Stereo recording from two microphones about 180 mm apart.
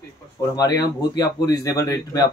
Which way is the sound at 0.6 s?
20° left (ahead or behind).